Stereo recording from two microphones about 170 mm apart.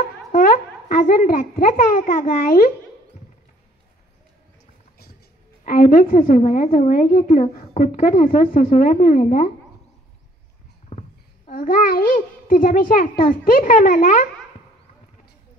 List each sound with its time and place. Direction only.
0.3 s speech: 55° left (ahead or behind)
5.7 s a woman's voice: 55° left (ahead or behind)
10.9 s a sound: 40° left (ahead or behind)
13.3 s speech: 55° left (ahead or behind)